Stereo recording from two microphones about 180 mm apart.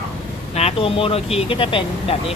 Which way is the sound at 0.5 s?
35° left (ahead or behind).